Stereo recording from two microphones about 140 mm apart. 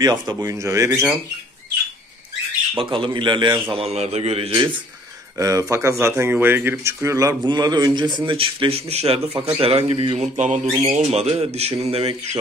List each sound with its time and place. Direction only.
0.0 s speech: 30° right (ahead or behind)
2.8 s speech: 35° right (ahead or behind)
3.7 s speech: 50° right (ahead or behind)
5.4 s speech: 20° right (ahead or behind); by 10.2 s 40° right (ahead or behind)
10.3 s speech: 55° right (ahead or behind)